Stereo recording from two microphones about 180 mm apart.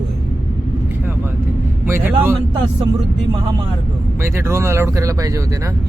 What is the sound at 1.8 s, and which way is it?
Speech, 10° right (ahead or behind).